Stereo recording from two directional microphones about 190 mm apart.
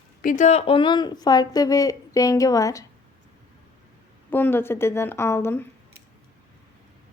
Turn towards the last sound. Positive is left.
turn(degrees=10)  # may be behind; listen again after turning